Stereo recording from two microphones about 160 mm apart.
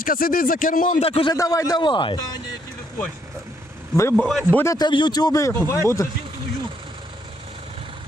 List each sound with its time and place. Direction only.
0.0 s speech: 65° left (ahead or behind)
1.0 s a man's voice: 35° left (ahead or behind)
1.4 s speech: 20° left (ahead or behind)
3.9 s speech: 15° left (ahead or behind)